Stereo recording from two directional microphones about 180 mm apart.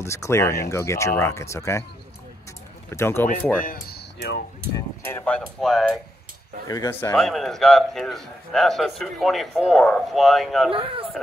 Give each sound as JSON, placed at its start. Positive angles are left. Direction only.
{"t": 0.0, "sound": "speech", "side_deg": 15}
{"t": 2.9, "sound": "speech", "side_deg": 15}
{"t": 3.8, "sound": "a sound", "side_deg": 60}
{"t": 4.7, "sound": "a man's voice", "side_deg": 10}
{"t": 6.7, "sound": "speech", "side_deg": 15}
{"t": 7.2, "sound": "a man's voice", "side_deg": 0}
{"t": 10.7, "sound": "speech", "side_deg": -30}